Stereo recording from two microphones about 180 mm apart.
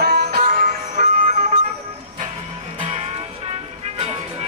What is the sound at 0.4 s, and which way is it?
Music, 45° right (ahead or behind).